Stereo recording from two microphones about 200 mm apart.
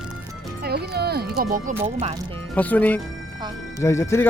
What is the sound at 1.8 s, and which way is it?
Speech, 30° right (ahead or behind).